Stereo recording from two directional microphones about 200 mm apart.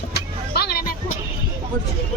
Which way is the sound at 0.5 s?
50° left (ahead or behind).